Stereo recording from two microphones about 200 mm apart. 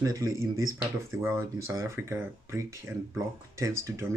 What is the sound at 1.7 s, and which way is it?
Speech, 15° right (ahead or behind).